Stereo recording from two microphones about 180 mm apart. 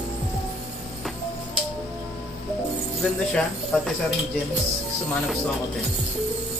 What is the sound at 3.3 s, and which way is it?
Speech, centre (ahead or behind).